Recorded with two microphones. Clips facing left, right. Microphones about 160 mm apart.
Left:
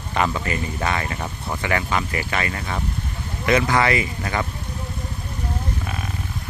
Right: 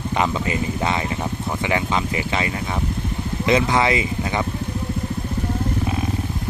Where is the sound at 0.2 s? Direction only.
15° right (ahead or behind).